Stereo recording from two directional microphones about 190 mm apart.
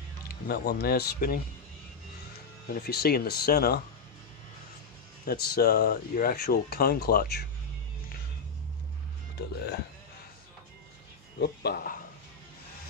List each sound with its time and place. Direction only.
0.5 s speech: 55° left (ahead or behind)
2.7 s speech: 55° left (ahead or behind)
5.2 s speech: 55° left (ahead or behind)
11.3 s speech: 55° left (ahead or behind)